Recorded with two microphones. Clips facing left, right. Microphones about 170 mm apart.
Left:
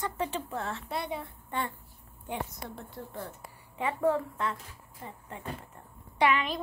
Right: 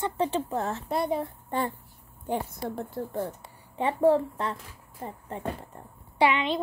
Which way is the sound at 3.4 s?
30° right (ahead or behind).